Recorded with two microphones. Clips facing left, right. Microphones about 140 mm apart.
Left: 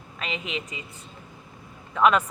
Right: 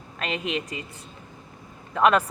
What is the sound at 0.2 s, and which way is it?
Speech, 55° right (ahead or behind).